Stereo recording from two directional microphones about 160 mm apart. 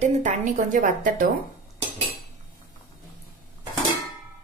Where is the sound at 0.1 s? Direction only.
50° right (ahead or behind).